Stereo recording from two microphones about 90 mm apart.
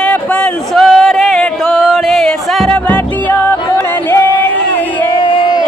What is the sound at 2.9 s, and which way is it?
Music, 20° left (ahead or behind).